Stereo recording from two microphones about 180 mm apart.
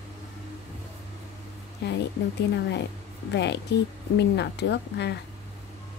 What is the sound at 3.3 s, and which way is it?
Speech, 70° left (ahead or behind).